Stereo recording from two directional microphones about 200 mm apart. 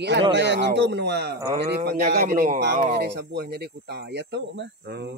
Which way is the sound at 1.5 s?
40° right (ahead or behind).